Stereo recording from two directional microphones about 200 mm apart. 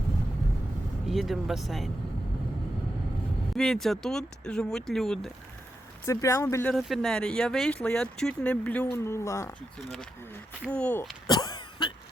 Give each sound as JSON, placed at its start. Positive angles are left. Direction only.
{"t": 1.0, "sound": "speech", "side_deg": 0}
{"t": 3.5, "sound": "speech", "side_deg": 0}
{"t": 6.1, "sound": "speech", "side_deg": 15}
{"t": 6.7, "sound": "speech", "side_deg": 0}
{"t": 9.9, "sound": "speech", "side_deg": 5}
{"t": 11.3, "sound": "cough", "side_deg": 20}